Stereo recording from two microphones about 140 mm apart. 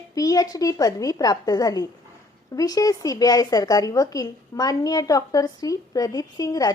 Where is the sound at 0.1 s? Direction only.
25° left (ahead or behind).